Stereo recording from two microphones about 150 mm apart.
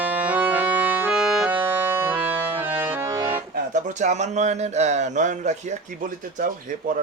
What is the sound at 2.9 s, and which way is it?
Music, 20° right (ahead or behind).